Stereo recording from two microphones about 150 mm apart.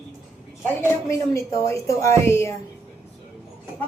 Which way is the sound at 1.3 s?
20° left (ahead or behind).